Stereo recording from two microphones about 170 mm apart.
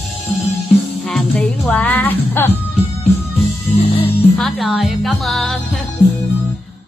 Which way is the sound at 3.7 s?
30° left (ahead or behind).